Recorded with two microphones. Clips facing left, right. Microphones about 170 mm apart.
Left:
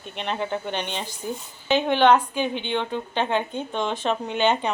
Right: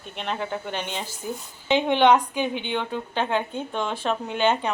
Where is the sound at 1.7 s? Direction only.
20° right (ahead or behind).